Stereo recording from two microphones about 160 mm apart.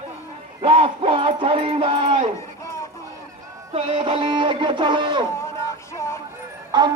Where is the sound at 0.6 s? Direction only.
35° right (ahead or behind).